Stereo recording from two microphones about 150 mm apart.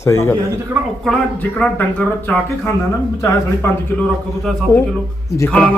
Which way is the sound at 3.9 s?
5° left (ahead or behind).